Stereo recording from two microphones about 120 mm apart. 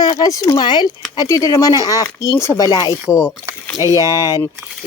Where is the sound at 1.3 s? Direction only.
25° left (ahead or behind).